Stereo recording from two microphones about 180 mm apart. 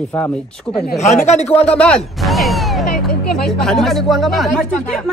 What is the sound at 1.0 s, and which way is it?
Speech, 40° left (ahead or behind).